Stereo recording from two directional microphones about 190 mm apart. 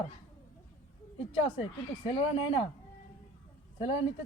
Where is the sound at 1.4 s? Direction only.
30° left (ahead or behind).